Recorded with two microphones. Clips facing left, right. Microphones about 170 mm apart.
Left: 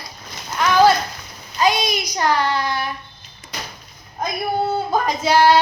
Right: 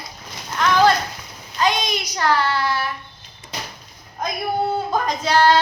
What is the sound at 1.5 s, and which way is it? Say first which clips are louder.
Child singing: left 2 dB; 10° left (ahead or behind).